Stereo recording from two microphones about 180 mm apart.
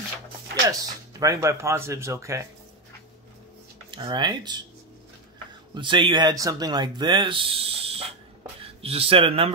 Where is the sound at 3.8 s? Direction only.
25° right (ahead or behind).